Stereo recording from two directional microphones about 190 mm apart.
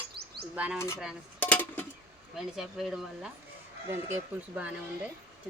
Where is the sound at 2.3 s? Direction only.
Centre (ahead or behind).